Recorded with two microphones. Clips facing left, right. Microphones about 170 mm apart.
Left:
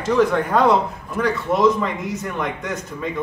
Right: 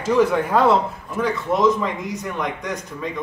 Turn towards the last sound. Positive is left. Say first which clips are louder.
# left 1 dB
turn(degrees=5)  # may be behind; listen again after turning